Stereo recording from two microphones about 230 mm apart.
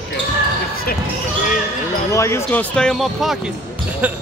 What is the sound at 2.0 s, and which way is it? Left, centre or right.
A man's voice, centre.